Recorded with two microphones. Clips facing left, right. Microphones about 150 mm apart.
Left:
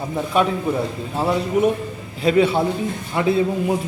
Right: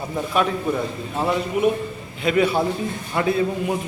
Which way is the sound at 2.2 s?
25° left (ahead or behind).